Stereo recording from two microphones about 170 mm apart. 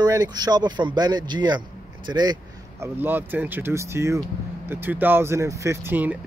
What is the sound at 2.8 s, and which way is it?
Speech, 10° right (ahead or behind).